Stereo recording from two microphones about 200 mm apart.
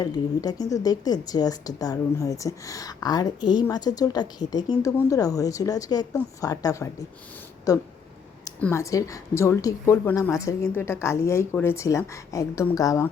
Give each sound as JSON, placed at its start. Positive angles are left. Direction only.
{"t": 0.0, "sound": "speech", "side_deg": 20}